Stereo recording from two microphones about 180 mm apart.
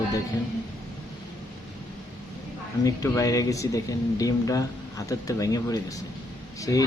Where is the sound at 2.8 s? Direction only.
20° left (ahead or behind).